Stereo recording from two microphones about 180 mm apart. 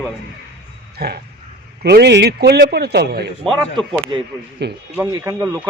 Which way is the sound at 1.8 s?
65° right (ahead or behind).